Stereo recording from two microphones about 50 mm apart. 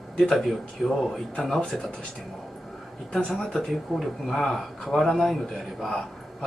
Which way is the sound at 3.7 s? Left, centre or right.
Centre.